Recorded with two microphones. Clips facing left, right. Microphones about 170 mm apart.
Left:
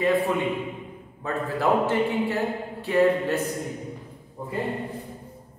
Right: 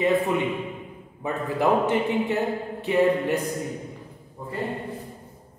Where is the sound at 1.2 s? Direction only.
20° right (ahead or behind).